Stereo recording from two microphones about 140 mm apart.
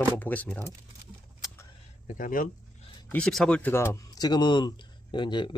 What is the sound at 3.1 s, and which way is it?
A man's voice, 5° left (ahead or behind).